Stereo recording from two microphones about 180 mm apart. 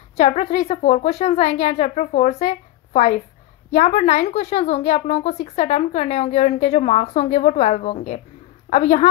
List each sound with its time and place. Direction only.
0.2 s a woman's voice: 40° left (ahead or behind)